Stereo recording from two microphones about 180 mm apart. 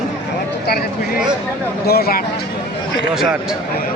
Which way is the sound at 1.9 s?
60° left (ahead or behind).